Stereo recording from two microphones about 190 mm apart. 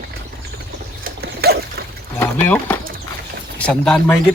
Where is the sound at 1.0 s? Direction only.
55° right (ahead or behind).